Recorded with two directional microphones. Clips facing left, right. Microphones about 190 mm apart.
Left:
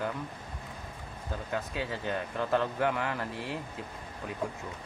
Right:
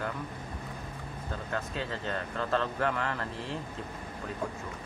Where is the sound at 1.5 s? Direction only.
10° left (ahead or behind).